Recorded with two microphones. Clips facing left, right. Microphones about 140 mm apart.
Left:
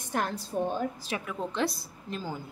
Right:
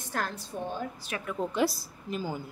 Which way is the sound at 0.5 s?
30° left (ahead or behind).